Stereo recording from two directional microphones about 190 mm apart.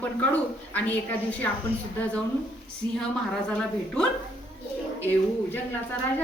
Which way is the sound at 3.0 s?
5° left (ahead or behind).